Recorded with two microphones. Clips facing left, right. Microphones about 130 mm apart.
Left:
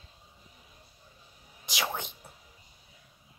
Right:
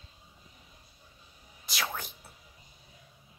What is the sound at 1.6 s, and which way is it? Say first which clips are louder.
Whispering: left 2 dB; 15° left (ahead or behind).